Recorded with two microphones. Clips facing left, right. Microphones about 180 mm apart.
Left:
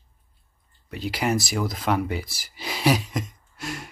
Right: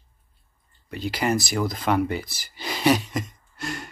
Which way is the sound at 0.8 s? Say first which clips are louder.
Right 1 dB; centre (ahead or behind).